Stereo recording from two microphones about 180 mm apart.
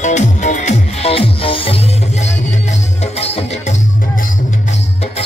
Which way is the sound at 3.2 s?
35° left (ahead or behind).